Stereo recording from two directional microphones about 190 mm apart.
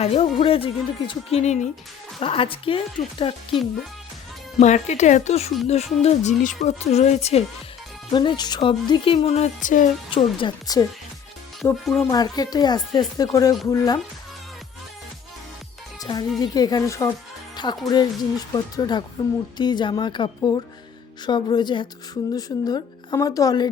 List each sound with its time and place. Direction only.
0.0 s speech: 30° left (ahead or behind)
4.6 s speech: 40° left (ahead or behind)
8.1 s speech: 25° left (ahead or behind); by 9.9 s 45° left (ahead or behind)
10.1 s speech: 25° left (ahead or behind)
16.0 s speech: 20° left (ahead or behind)